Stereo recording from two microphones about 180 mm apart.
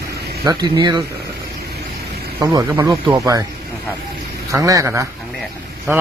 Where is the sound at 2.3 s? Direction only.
15° right (ahead or behind).